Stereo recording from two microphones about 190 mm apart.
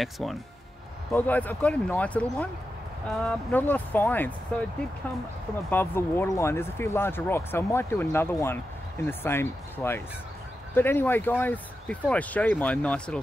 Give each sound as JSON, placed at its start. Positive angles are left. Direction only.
{"t": 0.0, "sound": "speech", "side_deg": 0}
{"t": 5.7, "sound": "speech", "side_deg": 10}